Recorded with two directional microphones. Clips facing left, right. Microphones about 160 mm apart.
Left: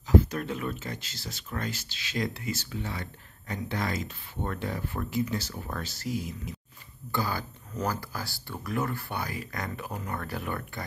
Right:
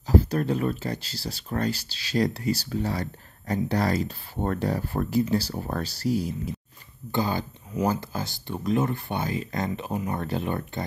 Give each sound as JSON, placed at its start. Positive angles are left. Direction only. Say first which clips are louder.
{"t": 0.0, "sound": "speech", "louder": "right 2 dB", "side_deg": -35}
{"t": 7.1, "sound": "speech", "louder": "right 5 dB", "side_deg": -20}